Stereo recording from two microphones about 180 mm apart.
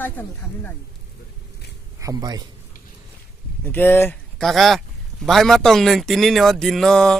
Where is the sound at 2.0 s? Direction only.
20° right (ahead or behind).